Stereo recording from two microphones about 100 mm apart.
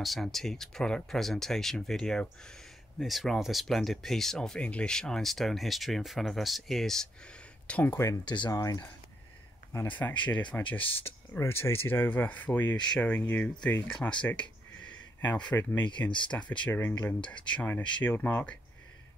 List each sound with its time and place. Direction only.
0.0 s speech: centre (ahead or behind)
8.3 s speech: 45° left (ahead or behind)
8.5 s speech: 35° left (ahead or behind)
9.7 s speech: 20° left (ahead or behind)
13.8 s speech: 5° left (ahead or behind)
16.6 s speech: 25° left (ahead or behind)